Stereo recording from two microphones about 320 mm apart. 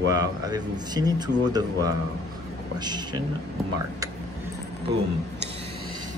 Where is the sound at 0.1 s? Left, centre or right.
Centre.